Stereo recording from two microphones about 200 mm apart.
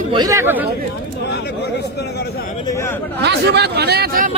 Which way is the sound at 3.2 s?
60° right (ahead or behind).